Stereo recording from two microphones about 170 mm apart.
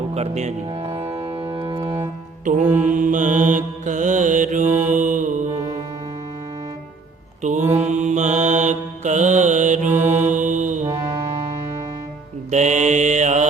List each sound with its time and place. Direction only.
0.1 s speech: 40° right (ahead or behind)
0.9 s music: 30° right (ahead or behind)
2.4 s music: 50° right (ahead or behind)
2.6 s mantra: 10° right (ahead or behind)
2.9 s mantra: 50° right (ahead or behind)
5.5 s music: 20° right (ahead or behind)
7.4 s mantra: 45° right (ahead or behind)
9.9 s mantra: 10° right (ahead or behind)
10.2 s mantra: 45° right (ahead or behind)
10.8 s music: 20° right (ahead or behind)
12.5 s mantra: 45° right (ahead or behind)